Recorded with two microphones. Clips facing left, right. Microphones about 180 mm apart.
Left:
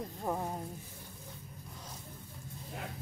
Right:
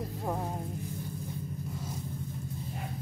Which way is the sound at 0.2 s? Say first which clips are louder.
Right 1 dB; 5° right (ahead or behind).